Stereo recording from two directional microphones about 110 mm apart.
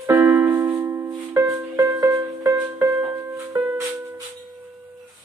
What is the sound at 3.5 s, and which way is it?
Music, 30° right (ahead or behind).